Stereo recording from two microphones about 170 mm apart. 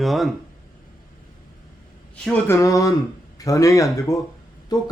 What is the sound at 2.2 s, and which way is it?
Speech, 10° left (ahead or behind).